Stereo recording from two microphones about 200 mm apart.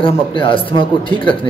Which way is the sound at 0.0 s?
25° left (ahead or behind).